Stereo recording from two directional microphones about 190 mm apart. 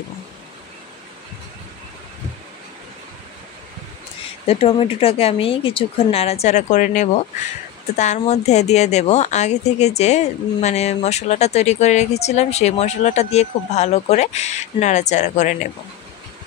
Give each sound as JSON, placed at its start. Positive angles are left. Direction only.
{"t": 4.5, "sound": "a woman's voice", "side_deg": 30}